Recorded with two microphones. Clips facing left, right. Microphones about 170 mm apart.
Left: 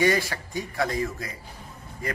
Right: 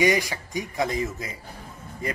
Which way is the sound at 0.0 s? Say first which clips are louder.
Right 1 dB; 15° right (ahead or behind).